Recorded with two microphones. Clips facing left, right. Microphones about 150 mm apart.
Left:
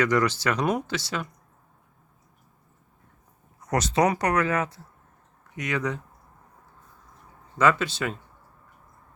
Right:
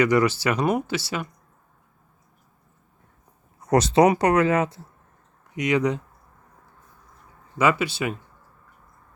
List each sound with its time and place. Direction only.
0.0 s speech: 10° right (ahead or behind)
3.7 s speech: 30° right (ahead or behind)
7.6 s speech: 10° right (ahead or behind)